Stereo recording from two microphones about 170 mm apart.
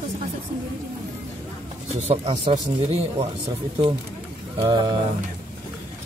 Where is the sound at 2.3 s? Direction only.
35° right (ahead or behind).